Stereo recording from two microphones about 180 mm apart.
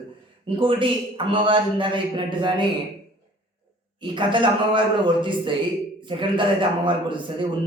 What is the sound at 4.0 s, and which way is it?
A man's voice, 25° right (ahead or behind).